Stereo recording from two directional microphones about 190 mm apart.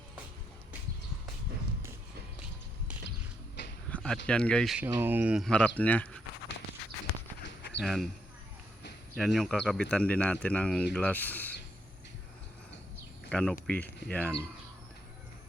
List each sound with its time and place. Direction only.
3.6 s a sound: 70° left (ahead or behind)
3.9 s a sound: 5° left (ahead or behind)
4.3 s speech: 5° left (ahead or behind)
4.9 s speech: 10° right (ahead or behind)
5.5 s speech: 5° left (ahead or behind)
7.4 s a sound: 65° left (ahead or behind)
7.8 s speech: centre (ahead or behind)
9.1 s speech: centre (ahead or behind)
13.3 s speech: 5° left (ahead or behind)